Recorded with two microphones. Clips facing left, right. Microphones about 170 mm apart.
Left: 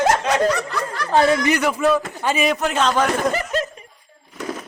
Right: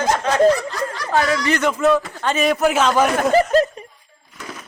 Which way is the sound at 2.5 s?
5° right (ahead or behind).